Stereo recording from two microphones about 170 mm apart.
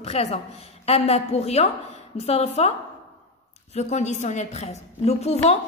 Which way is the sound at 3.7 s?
40° left (ahead or behind).